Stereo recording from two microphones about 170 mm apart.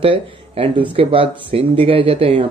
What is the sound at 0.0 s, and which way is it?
Speech, 30° right (ahead or behind).